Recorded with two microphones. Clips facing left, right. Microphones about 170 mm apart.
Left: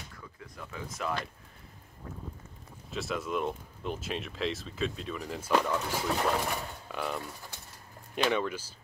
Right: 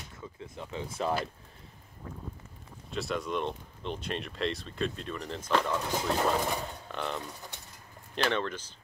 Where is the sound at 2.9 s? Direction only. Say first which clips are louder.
Right 1 dB; centre (ahead or behind).